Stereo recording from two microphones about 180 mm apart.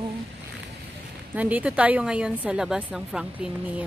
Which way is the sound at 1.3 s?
10° right (ahead or behind).